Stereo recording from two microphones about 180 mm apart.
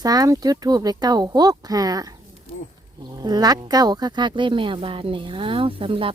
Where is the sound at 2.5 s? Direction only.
30° left (ahead or behind).